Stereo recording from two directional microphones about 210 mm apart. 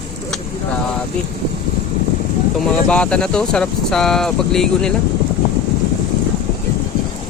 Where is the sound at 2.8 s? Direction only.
5° left (ahead or behind).